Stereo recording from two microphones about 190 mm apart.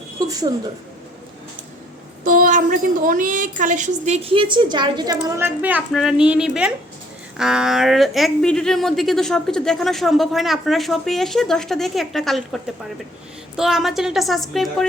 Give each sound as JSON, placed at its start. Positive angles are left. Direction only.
{"t": 0.3, "sound": "speech", "side_deg": -20}
{"t": 2.2, "sound": "a woman's voice", "side_deg": -45}
{"t": 5.4, "sound": "speech", "side_deg": -10}
{"t": 13.6, "sound": "speech", "side_deg": 0}